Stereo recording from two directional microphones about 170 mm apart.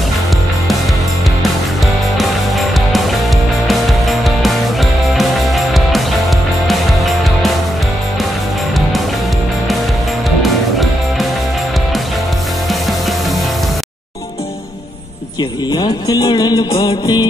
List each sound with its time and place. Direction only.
2.1 s music: centre (ahead or behind)
10.4 s music: centre (ahead or behind)
15.7 s music: 20° left (ahead or behind)